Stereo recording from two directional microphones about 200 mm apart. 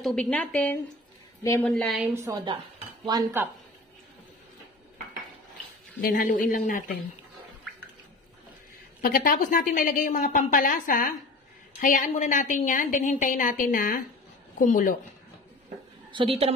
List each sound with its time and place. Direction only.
0.0 s a woman's voice: 5° left (ahead or behind)
1.7 s a woman's voice: centre (ahead or behind)
2.1 s speech: 15° right (ahead or behind)
5.9 s a woman's voice: 45° left (ahead or behind)
9.0 s a woman's voice: 45° left (ahead or behind)
16.1 s a woman's voice: 25° right (ahead or behind)